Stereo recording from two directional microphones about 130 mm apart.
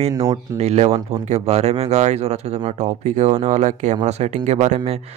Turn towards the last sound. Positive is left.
turn(degrees=-55)  # may be behind; listen again after turning